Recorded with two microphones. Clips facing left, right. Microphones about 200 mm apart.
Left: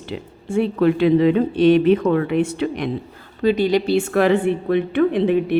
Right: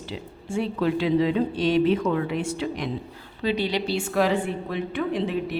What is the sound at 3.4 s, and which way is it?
A woman's voice, 50° left (ahead or behind).